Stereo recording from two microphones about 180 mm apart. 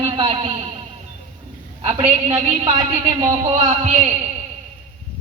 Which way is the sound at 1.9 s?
35° right (ahead or behind).